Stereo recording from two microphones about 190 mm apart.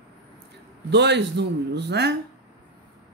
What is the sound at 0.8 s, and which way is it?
A man's voice, 65° right (ahead or behind).